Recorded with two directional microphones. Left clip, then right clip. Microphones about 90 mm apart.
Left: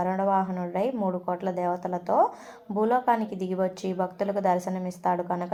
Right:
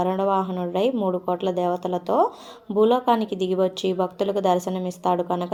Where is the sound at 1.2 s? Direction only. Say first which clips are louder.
Right 5 dB; 30° left (ahead or behind).